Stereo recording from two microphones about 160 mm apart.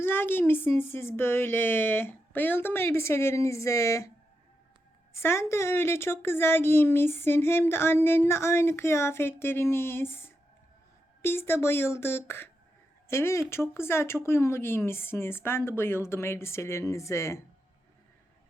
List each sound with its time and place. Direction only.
0.0 s a woman's voice: 15° left (ahead or behind)
5.1 s a woman's voice: 15° left (ahead or behind)